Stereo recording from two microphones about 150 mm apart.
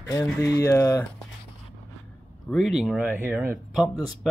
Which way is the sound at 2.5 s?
Centre (ahead or behind).